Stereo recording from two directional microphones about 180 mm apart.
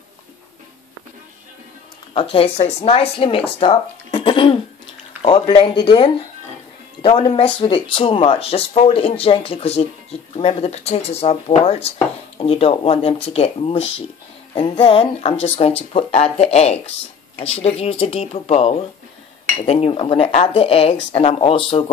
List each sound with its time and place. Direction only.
2.3 s speech: 35° left (ahead or behind)